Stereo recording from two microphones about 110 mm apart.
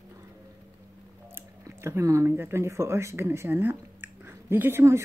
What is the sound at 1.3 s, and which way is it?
Speech, 25° right (ahead or behind).